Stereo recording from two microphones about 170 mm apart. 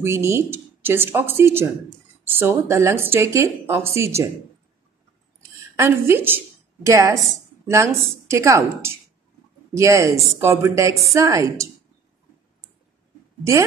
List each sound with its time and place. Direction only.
0.0 s speech: 15° right (ahead or behind)
5.8 s a woman's voice: 15° right (ahead or behind)